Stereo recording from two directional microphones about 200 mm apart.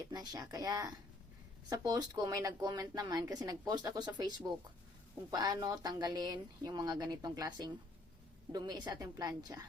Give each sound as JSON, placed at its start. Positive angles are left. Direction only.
{"t": 0.1, "sound": "speech", "side_deg": -20}